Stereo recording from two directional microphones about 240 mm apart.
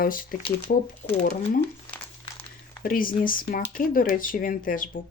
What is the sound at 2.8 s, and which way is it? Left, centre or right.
Speech, left.